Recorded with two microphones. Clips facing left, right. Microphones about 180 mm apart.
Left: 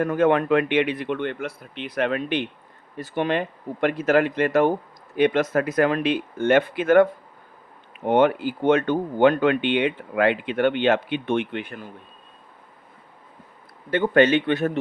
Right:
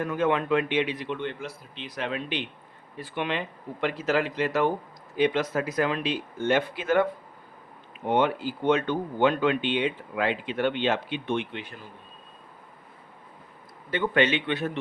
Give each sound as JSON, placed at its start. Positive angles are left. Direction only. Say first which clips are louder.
{"t": 0.0, "sound": "speech", "louder": "left 6 dB", "side_deg": 50}
{"t": 13.9, "sound": "speech", "louder": "left 6 dB", "side_deg": 45}